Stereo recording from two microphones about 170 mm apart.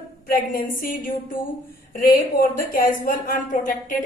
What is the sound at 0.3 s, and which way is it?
Speech, 55° left (ahead or behind).